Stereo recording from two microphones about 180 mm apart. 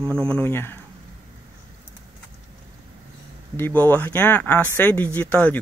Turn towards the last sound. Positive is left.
turn(degrees=10)  # may be behind; listen again after turning